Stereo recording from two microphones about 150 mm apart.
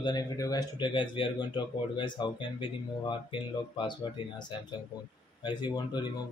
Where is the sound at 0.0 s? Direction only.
25° left (ahead or behind).